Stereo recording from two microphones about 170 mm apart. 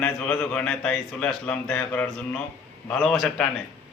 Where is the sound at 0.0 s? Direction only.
5° left (ahead or behind).